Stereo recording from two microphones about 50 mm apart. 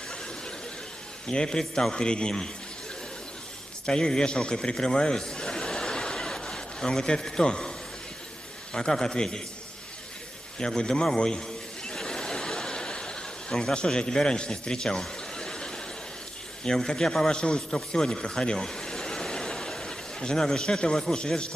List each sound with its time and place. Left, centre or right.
1.2 s a man's voice: centre
3.8 s a man's voice: centre
8.7 s a man's voice: centre
10.6 s a sound: centre
16.6 s a man's voice: centre